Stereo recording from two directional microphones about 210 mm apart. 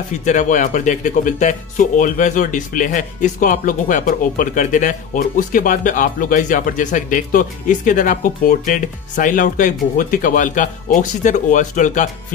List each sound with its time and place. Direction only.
0.2 s speech: 35° left (ahead or behind)